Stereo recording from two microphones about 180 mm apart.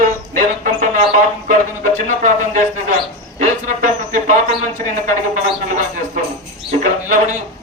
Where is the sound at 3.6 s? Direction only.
45° right (ahead or behind).